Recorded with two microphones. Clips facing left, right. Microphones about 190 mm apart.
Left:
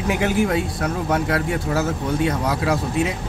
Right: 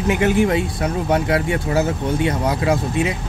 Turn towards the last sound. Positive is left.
turn(degrees=0)  # may be behind; listen again after turning